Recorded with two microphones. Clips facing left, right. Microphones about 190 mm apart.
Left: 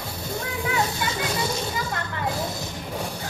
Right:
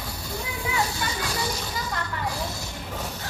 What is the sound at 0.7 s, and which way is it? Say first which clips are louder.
Children playing: left 1 dB; 20° left (ahead or behind).